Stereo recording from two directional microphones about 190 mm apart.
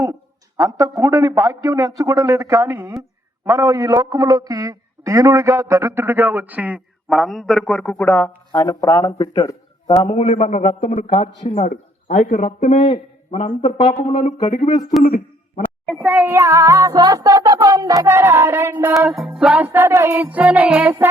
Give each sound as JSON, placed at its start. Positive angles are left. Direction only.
{"t": 0.0, "sound": "music", "side_deg": -20}
{"t": 8.5, "sound": "a man's voice", "side_deg": 20}
{"t": 10.2, "sound": "a man's voice", "side_deg": 35}
{"t": 14.7, "sound": "a man's voice", "side_deg": 20}
{"t": 15.0, "sound": "a sound", "side_deg": 50}
{"t": 15.9, "sound": "music", "side_deg": -5}